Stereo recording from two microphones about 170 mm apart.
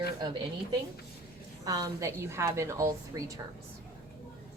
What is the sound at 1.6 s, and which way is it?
A woman's voice, 20° right (ahead or behind).